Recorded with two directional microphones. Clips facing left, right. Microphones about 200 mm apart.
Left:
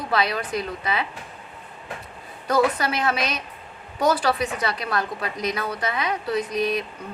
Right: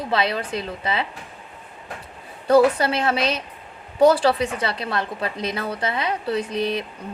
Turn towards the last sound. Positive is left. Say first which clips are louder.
# even
turn(degrees=-30)  # may be behind; listen again after turning